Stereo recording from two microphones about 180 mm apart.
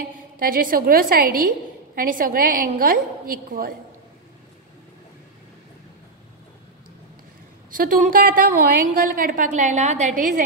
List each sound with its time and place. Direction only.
0.4 s a woman's voice: 50° right (ahead or behind)
7.7 s a woman's voice: 50° right (ahead or behind)